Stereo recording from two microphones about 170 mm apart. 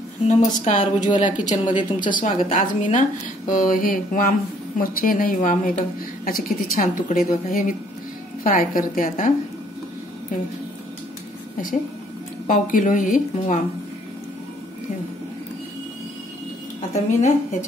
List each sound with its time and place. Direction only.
0.3 s a woman's voice: 45° left (ahead or behind)
12.4 s a woman's voice: 50° left (ahead or behind)
16.9 s a woman's voice: 45° left (ahead or behind)